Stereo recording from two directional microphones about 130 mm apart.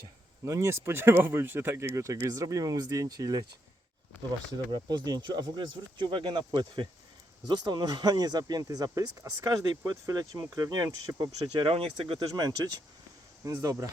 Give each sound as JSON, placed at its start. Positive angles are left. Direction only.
{"t": 0.4, "sound": "speech", "side_deg": -20}
{"t": 4.7, "sound": "speech", "side_deg": -35}
{"t": 10.8, "sound": "speech", "side_deg": -20}
{"t": 11.6, "sound": "speech", "side_deg": -45}
{"t": 12.3, "sound": "speech", "side_deg": -30}